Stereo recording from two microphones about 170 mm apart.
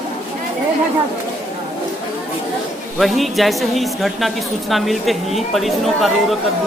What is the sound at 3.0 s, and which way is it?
A woman's voice, centre (ahead or behind).